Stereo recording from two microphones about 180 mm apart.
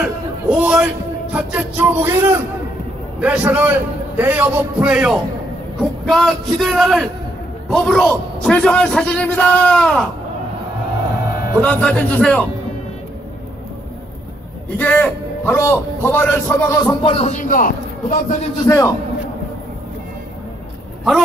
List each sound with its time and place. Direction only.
0.0 s a man's voice: 5° right (ahead or behind)
11.6 s a man's voice: 5° left (ahead or behind)
14.8 s a man's voice: 10° left (ahead or behind)
17.0 s a man's voice: 30° left (ahead or behind)
18.7 s a man's voice: 15° left (ahead or behind)